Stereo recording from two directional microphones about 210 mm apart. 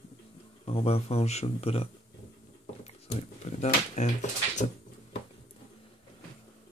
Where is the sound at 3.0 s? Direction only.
30° left (ahead or behind).